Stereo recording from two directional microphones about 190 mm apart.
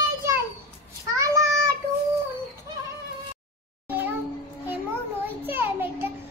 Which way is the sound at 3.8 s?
10° right (ahead or behind).